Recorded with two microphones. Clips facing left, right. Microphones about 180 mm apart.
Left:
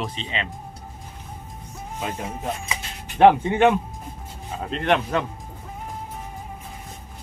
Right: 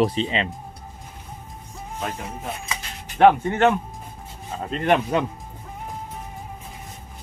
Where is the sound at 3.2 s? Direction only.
20° left (ahead or behind).